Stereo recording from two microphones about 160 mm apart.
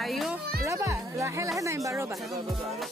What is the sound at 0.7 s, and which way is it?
Music, 15° right (ahead or behind).